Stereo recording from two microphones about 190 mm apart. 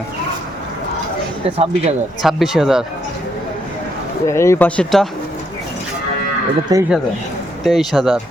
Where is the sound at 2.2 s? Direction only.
Centre (ahead or behind).